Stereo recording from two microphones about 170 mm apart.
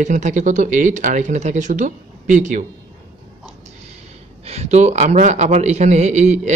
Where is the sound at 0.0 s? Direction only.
45° right (ahead or behind).